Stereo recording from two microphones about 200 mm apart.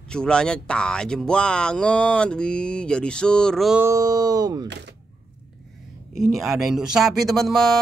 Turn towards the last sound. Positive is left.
turn(degrees=0)  # may be behind; listen again after turning